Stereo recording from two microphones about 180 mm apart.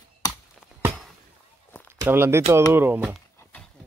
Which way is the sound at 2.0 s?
15° right (ahead or behind).